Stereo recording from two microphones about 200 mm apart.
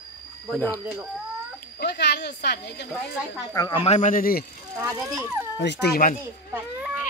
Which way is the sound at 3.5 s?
25° left (ahead or behind).